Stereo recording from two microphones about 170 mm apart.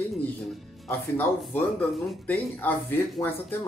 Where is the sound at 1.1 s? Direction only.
10° left (ahead or behind).